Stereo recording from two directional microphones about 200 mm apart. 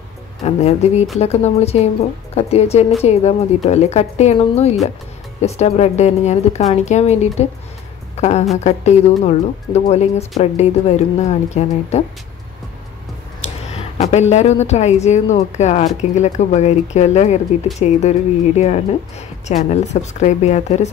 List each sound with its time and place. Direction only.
0.4 s a woman's voice: 35° left (ahead or behind)
13.7 s a woman's voice: 35° left (ahead or behind)